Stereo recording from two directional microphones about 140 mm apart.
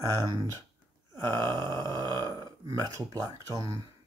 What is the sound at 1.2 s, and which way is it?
Groan, 30° right (ahead or behind).